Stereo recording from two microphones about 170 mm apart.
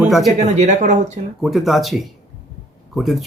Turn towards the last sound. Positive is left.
turn(degrees=0)  # may be behind; listen again after turning